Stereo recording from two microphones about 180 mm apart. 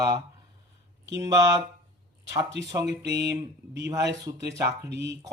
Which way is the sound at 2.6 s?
70° right (ahead or behind).